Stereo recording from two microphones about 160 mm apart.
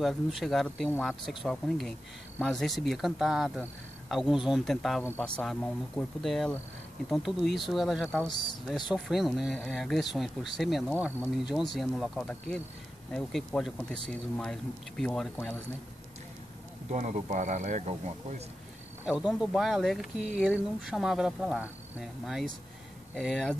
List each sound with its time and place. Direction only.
0.0 s speech: centre (ahead or behind)
16.9 s speech: 50° right (ahead or behind)
19.0 s speech: 5° right (ahead or behind)